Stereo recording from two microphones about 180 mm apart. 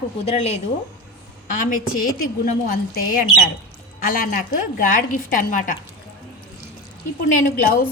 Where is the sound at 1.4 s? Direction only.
45° left (ahead or behind).